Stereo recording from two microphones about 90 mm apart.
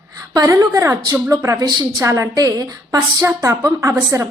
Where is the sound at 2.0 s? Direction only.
35° right (ahead or behind).